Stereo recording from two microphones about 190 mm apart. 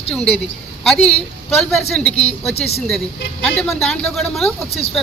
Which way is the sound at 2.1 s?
30° left (ahead or behind).